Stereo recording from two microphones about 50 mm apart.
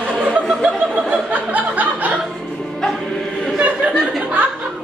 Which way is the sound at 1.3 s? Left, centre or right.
Right.